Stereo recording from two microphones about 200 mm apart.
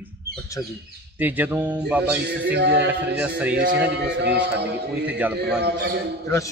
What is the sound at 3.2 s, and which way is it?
Speech, 5° right (ahead or behind).